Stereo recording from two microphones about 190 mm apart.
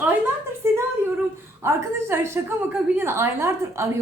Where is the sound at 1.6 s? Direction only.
15° right (ahead or behind).